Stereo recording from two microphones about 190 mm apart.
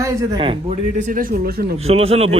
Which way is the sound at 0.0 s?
15° right (ahead or behind).